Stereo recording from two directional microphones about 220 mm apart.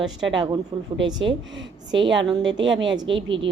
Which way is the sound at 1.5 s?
55° right (ahead or behind).